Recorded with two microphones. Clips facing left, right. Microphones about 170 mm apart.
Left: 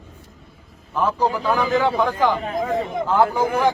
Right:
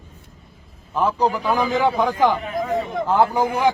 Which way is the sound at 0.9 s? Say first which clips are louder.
Right 1 dB; 15° right (ahead or behind).